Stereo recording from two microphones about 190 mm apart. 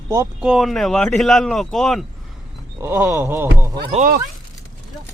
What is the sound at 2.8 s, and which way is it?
Speech, 15° right (ahead or behind).